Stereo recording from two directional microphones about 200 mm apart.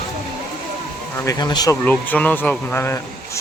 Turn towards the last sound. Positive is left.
turn(degrees=10)  # may be behind; listen again after turning